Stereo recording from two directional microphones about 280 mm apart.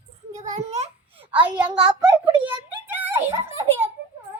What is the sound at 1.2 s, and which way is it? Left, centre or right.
Speech, centre.